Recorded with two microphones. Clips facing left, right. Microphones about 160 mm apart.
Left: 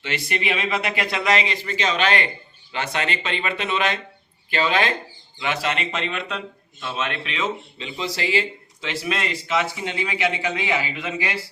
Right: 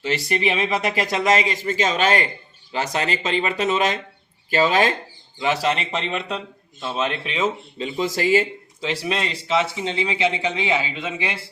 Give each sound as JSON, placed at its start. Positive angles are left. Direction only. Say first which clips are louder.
{"t": 0.0, "sound": "speech", "louder": "right 4 dB", "side_deg": -35}